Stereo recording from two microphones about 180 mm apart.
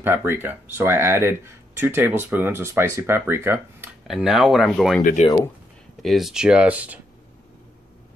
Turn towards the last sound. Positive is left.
turn(degrees=-10)  # may be behind; listen again after turning